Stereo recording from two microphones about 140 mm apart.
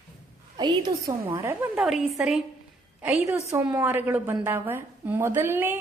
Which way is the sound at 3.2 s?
20° right (ahead or behind).